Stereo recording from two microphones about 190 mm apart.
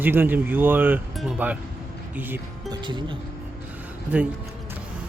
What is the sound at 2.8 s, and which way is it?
Speech, 25° right (ahead or behind).